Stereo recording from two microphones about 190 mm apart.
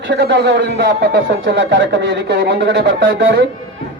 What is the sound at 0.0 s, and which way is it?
Speech, 65° right (ahead or behind).